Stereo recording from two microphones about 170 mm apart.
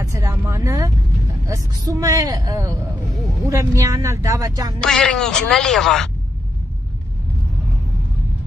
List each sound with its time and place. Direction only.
0.0 s vehicle: 15° right (ahead or behind)
1.5 s speech: 20° right (ahead or behind)
4.7 s speech: 5° left (ahead or behind)